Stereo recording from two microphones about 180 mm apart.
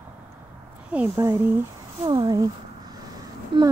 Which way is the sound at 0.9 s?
10° right (ahead or behind).